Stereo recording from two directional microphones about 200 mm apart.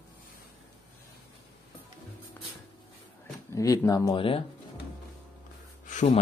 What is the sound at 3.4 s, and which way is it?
Speech, 15° left (ahead or behind).